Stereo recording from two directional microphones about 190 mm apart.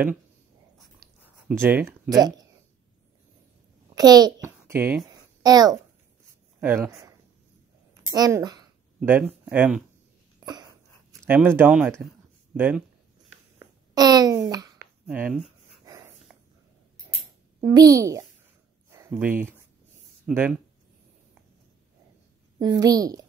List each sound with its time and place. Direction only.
1.5 s speech: 10° right (ahead or behind)
3.9 s a child's voice: 20° right (ahead or behind)
8.1 s speech: 15° right (ahead or behind)
10.4 s a sound: 20° right (ahead or behind)
11.3 s speech: 10° right (ahead or behind)
13.6 s a sound: 20° right (ahead or behind)
15.0 s speech: 5° right (ahead or behind)
15.8 s dog: 20° right (ahead or behind)
17.6 s speech: 20° right (ahead or behind)
18.9 s a sound: 15° right (ahead or behind)
20.2 s speech: 10° right (ahead or behind)
22.6 s a woman's voice: 20° right (ahead or behind)